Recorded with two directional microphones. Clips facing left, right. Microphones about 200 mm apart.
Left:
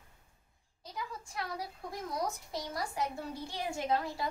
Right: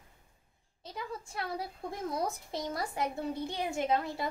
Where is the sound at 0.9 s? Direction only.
25° right (ahead or behind).